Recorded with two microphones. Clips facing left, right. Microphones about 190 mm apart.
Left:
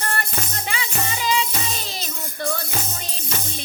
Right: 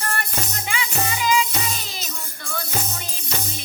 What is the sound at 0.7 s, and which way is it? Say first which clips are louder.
Music: right 2 dB; 35° left (ahead or behind).